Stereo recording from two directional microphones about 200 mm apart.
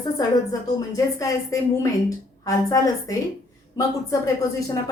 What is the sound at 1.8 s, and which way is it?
A woman's voice, 15° left (ahead or behind).